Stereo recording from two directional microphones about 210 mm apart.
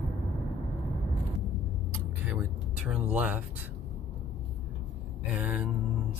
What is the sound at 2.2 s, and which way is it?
Vehicle, 5° right (ahead or behind).